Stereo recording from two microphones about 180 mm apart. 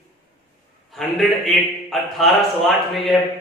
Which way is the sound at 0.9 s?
Centre (ahead or behind).